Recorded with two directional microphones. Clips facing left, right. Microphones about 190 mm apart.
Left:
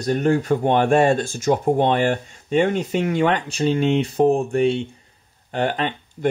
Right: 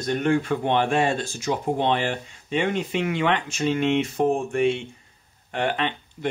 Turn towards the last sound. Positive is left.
turn(degrees=40)  # may be behind; listen again after turning